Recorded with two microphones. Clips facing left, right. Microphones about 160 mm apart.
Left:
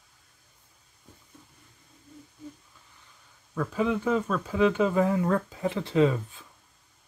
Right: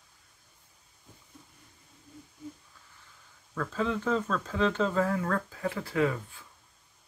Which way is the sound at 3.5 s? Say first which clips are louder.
Left 4 dB; 15° left (ahead or behind).